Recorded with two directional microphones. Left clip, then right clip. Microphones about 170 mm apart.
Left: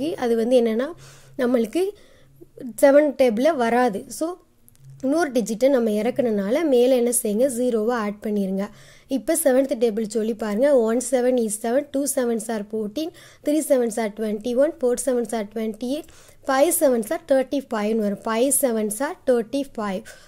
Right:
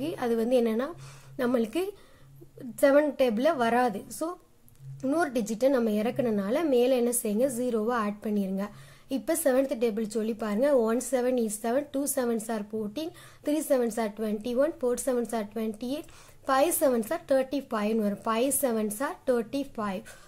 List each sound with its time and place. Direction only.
0.0 s a woman's voice: 35° left (ahead or behind)